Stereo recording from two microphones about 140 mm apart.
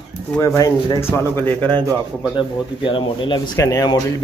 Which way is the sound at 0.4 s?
20° left (ahead or behind).